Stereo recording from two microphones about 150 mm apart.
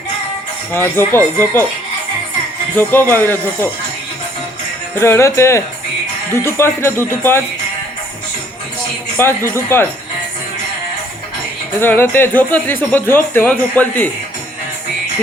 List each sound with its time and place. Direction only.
0.7 s speech: 15° left (ahead or behind)
2.7 s speech: 15° left (ahead or behind)
4.9 s speech: 15° left (ahead or behind)
9.1 s speech: 15° left (ahead or behind)
11.8 s speech: 15° left (ahead or behind)